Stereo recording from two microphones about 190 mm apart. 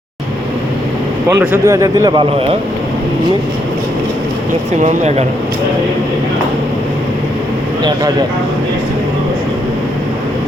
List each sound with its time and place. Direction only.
1.4 s speech: 15° right (ahead or behind)
4.8 s speech: 35° right (ahead or behind)